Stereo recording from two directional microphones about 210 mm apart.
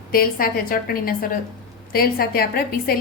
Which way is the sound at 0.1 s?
45° left (ahead or behind).